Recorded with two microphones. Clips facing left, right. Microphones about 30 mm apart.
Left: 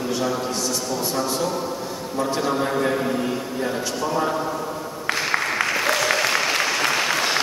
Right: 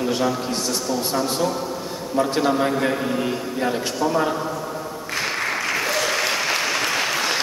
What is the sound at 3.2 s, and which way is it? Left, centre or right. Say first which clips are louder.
A man's voice: right 1 dB; centre.